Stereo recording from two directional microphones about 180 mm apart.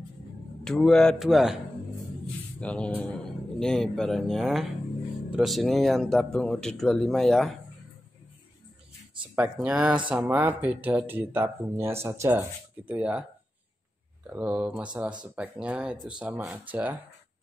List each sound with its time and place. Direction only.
0.7 s speech: centre (ahead or behind)
2.6 s speech: 5° left (ahead or behind)
9.3 s speech: 10° right (ahead or behind)
14.3 s speech: 5° right (ahead or behind)